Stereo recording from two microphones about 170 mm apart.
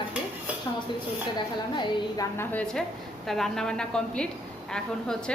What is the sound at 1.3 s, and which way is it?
Speech, 25° left (ahead or behind).